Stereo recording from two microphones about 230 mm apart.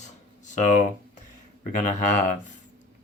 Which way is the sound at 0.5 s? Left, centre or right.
Left.